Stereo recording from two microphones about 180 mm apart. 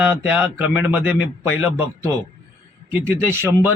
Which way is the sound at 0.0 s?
10° right (ahead or behind).